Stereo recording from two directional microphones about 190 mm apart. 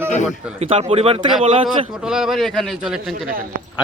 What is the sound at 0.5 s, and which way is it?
Speech, 30° right (ahead or behind).